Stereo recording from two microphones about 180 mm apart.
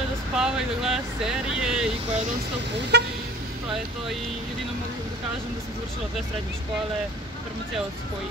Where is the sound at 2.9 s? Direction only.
70° right (ahead or behind).